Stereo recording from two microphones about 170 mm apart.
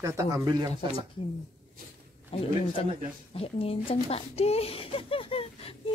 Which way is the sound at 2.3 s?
35° left (ahead or behind).